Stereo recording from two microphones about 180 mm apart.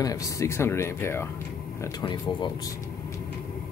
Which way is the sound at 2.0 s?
25° left (ahead or behind).